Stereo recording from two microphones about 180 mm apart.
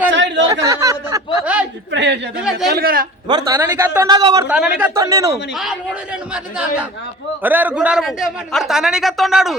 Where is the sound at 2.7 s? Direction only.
55° right (ahead or behind).